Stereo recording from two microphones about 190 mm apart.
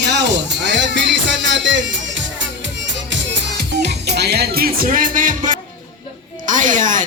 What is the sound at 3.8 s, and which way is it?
Speech, 60° right (ahead or behind).